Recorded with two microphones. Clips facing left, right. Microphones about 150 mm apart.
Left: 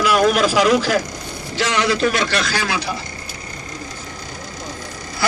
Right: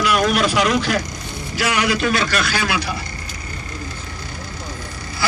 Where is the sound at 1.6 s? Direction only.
10° right (ahead or behind).